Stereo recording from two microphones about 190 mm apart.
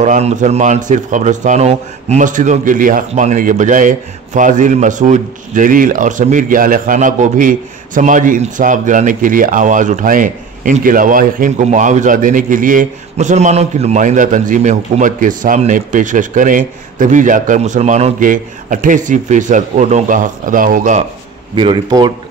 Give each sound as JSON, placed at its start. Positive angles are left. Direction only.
{"t": 0.0, "sound": "speech", "side_deg": -40}
{"t": 21.5, "sound": "speech", "side_deg": -25}